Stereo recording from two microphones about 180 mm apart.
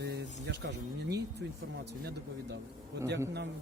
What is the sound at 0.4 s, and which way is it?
Speech, 70° right (ahead or behind).